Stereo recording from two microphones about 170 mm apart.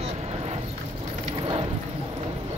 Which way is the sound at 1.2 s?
35° right (ahead or behind).